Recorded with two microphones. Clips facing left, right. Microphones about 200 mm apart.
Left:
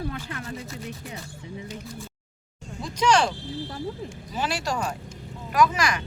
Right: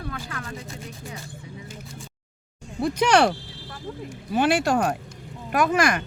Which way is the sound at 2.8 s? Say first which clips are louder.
Right 3 dB; 60° right (ahead or behind).